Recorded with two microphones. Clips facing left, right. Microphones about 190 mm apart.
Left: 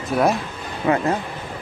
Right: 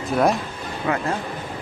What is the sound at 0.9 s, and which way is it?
Speech, 25° left (ahead or behind).